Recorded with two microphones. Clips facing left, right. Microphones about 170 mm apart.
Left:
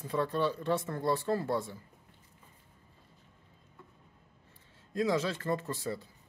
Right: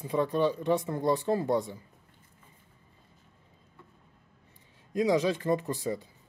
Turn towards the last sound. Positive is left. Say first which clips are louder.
# right 4 dB
turn(degrees=-15)  # may be behind; listen again after turning